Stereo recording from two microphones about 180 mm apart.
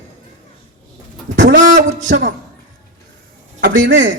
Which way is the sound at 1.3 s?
75° right (ahead or behind).